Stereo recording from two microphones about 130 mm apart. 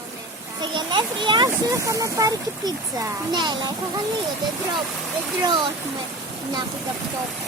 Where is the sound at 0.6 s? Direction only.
35° right (ahead or behind).